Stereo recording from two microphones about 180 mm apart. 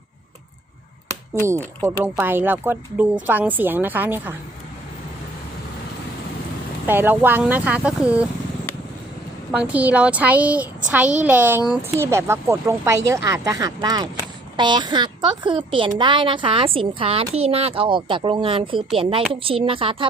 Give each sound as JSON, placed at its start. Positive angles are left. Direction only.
{"t": 1.5, "sound": "speech", "side_deg": -15}
{"t": 6.8, "sound": "speech", "side_deg": -10}
{"t": 9.5, "sound": "a woman's voice", "side_deg": -10}